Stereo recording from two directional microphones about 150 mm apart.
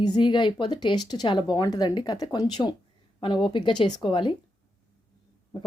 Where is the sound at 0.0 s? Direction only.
30° left (ahead or behind).